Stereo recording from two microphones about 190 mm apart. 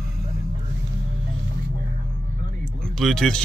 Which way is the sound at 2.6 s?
Centre (ahead or behind).